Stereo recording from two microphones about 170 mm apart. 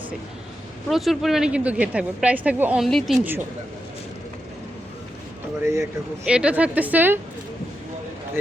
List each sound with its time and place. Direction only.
0.9 s speech: centre (ahead or behind)
3.2 s speech: 15° right (ahead or behind)
5.6 s speech: 15° right (ahead or behind)
6.2 s speech: 5° right (ahead or behind)